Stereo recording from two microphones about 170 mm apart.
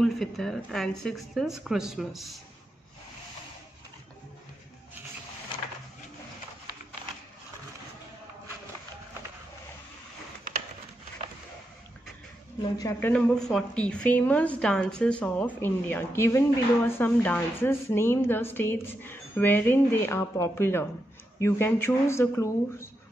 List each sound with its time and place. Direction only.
0.0 s speech: centre (ahead or behind)
12.7 s a woman's voice: 20° left (ahead or behind)
13.1 s speech: 5° left (ahead or behind)